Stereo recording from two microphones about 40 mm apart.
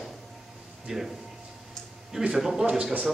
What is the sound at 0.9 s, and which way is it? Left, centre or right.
Speech, centre.